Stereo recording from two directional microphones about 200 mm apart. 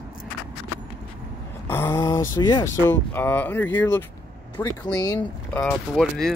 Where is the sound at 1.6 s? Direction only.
10° left (ahead or behind).